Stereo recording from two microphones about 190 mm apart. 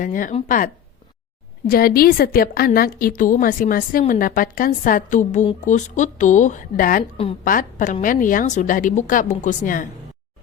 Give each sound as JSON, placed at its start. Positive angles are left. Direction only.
{"t": 0.0, "sound": "a woman's voice", "side_deg": 45}